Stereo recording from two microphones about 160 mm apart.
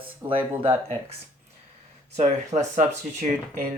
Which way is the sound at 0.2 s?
20° right (ahead or behind).